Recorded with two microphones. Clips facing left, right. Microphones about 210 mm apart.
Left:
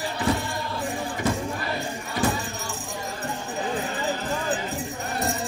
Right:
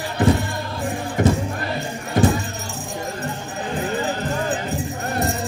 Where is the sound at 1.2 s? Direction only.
50° right (ahead or behind).